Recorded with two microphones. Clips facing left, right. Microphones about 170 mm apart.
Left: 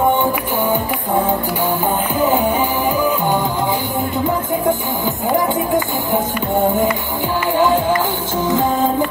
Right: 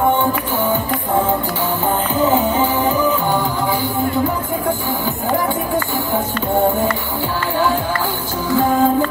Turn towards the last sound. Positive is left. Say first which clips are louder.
# left 3 dB
turn(degrees=20)  # may be behind; listen again after turning